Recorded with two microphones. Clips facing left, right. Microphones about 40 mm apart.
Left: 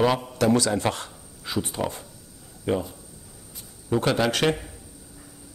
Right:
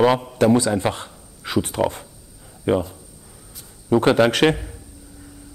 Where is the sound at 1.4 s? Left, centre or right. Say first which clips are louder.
Right 6 dB; right.